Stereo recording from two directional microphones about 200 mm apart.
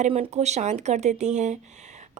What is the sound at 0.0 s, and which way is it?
Speech, 30° right (ahead or behind).